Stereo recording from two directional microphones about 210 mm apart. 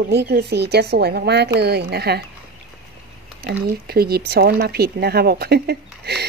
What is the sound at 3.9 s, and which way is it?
Speech, 50° right (ahead or behind).